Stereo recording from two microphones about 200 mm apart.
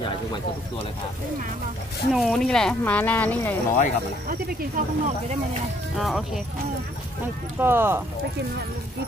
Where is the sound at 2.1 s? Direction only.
Centre (ahead or behind).